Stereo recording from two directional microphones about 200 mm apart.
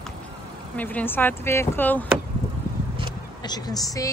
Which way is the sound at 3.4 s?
20° left (ahead or behind).